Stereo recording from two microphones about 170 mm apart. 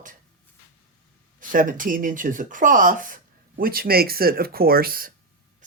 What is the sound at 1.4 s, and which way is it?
Speech, 50° right (ahead or behind).